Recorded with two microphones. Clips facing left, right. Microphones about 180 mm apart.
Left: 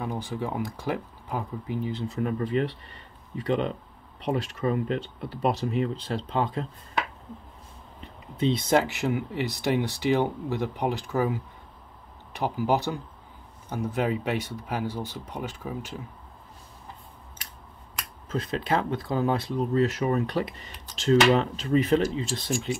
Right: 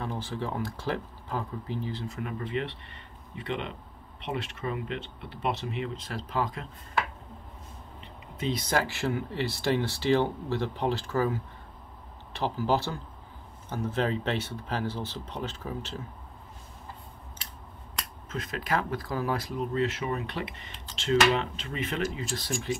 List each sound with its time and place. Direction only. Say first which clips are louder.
0.0 s speech: left 3 dB; 15° left (ahead or behind)
2.0 s speech: left 7 dB; 35° left (ahead or behind)
8.4 s speech: left 6 dB; 25° left (ahead or behind)
18.3 s speech: left 4 dB; 30° left (ahead or behind)
19.7 s speech: left 6 dB; 40° left (ahead or behind); by 22.7 s 25° left (ahead or behind)